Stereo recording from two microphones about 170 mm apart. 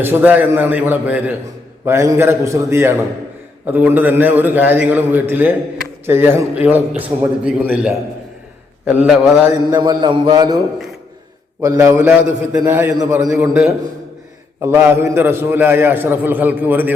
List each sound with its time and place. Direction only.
0.0 s a man's voice: 10° right (ahead or behind)
9.7 s a man's voice: 25° right (ahead or behind)
11.6 s a man's voice: 20° right (ahead or behind)
13.2 s a man's voice: 5° right (ahead or behind)